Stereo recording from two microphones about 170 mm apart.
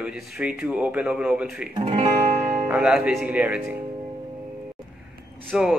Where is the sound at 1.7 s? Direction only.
30° right (ahead or behind).